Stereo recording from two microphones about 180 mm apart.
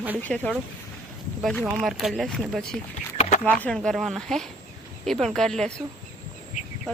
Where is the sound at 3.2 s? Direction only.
40° left (ahead or behind).